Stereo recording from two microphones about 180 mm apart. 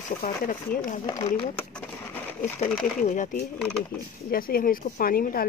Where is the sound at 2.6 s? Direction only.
45° left (ahead or behind).